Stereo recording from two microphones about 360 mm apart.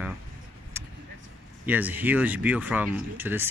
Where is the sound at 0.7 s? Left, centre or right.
Centre.